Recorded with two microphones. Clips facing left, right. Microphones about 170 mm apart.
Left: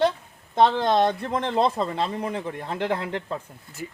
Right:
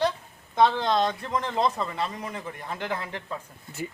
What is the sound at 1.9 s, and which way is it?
Speech, 60° left (ahead or behind).